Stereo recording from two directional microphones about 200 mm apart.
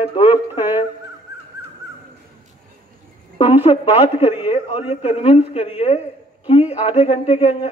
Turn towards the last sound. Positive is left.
turn(degrees=30)  # may be behind; listen again after turning